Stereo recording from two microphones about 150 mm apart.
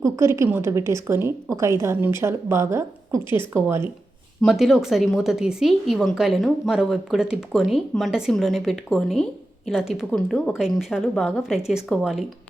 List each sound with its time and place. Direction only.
0.0 s a woman's voice: 20° right (ahead or behind)
4.4 s a woman's voice: centre (ahead or behind)